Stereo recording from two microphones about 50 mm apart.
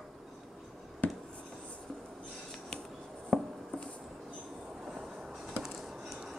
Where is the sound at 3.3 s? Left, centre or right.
Centre.